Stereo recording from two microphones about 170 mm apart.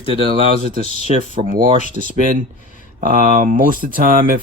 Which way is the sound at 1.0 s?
55° right (ahead or behind).